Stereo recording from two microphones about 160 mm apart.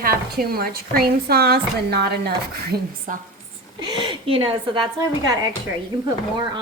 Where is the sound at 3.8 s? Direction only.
25° right (ahead or behind).